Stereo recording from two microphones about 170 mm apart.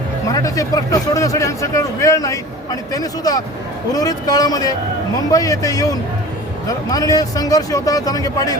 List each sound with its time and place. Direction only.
0.3 s speech: 20° left (ahead or behind)